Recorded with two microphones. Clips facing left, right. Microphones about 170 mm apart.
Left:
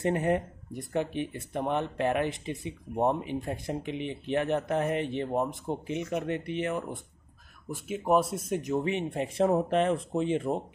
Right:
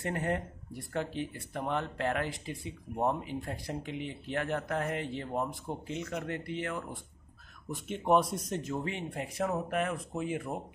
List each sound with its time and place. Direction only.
0.0 s speech: 20° left (ahead or behind)
7.7 s speech: 5° left (ahead or behind); by 10.6 s 25° left (ahead or behind)